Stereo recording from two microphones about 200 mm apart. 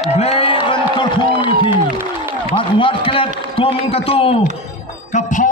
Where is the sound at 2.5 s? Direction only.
25° left (ahead or behind).